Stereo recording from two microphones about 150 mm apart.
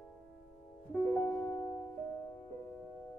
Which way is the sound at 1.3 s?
15° left (ahead or behind).